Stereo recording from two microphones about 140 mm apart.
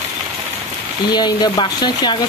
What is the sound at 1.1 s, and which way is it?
Speech, 30° left (ahead or behind).